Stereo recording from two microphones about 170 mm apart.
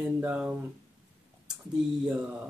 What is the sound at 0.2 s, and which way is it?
Speech, 10° right (ahead or behind).